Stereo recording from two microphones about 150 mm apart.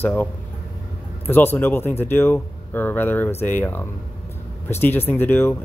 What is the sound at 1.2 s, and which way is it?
Speech, 15° left (ahead or behind).